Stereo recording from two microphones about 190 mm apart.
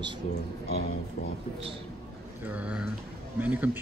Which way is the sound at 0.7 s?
55° left (ahead or behind).